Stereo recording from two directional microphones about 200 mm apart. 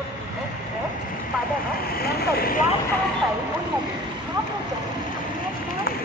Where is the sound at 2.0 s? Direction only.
50° left (ahead or behind).